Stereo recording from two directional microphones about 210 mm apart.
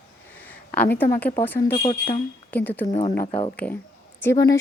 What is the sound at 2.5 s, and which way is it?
Speech, 10° left (ahead or behind).